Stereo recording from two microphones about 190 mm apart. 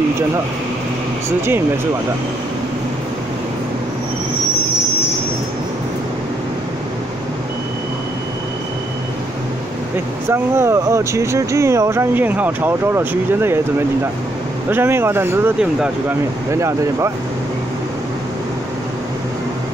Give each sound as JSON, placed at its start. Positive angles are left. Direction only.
{"t": 10.3, "sound": "speech", "side_deg": -15}